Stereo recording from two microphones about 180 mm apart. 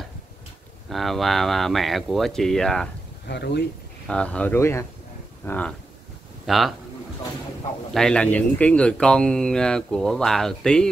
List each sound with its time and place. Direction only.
0.8 s speech: centre (ahead or behind)
3.3 s speech: 70° left (ahead or behind)
4.1 s speech: 5° left (ahead or behind)
7.9 s speech: 5° left (ahead or behind)